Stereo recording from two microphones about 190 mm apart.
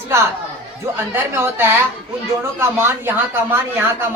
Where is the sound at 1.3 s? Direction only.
10° right (ahead or behind).